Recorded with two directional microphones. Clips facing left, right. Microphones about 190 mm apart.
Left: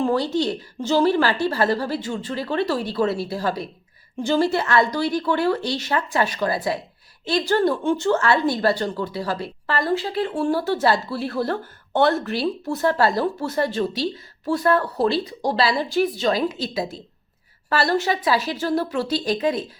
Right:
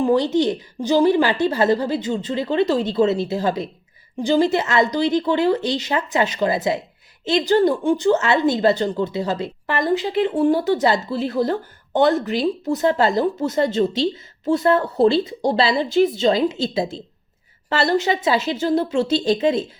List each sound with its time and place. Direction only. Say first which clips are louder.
0.0 s a woman's voice: right 4 dB; 20° right (ahead or behind)